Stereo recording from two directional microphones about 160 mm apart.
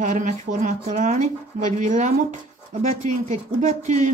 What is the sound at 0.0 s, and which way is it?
Speech, 50° right (ahead or behind).